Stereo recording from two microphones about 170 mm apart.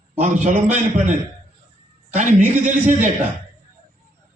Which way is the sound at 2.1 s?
45° right (ahead or behind).